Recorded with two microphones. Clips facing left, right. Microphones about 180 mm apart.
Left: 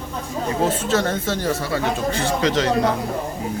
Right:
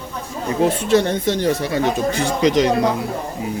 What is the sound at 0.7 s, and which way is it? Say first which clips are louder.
Speech: right 4 dB; 15° right (ahead or behind).